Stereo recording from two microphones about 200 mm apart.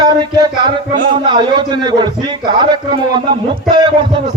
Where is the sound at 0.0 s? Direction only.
20° right (ahead or behind).